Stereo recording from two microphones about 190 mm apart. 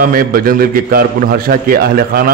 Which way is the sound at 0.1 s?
50° right (ahead or behind).